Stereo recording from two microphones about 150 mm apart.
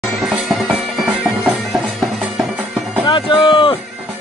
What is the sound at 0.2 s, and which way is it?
Music, centre (ahead or behind).